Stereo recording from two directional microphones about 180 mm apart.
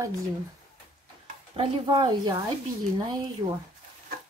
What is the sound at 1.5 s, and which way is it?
Speech, 30° right (ahead or behind).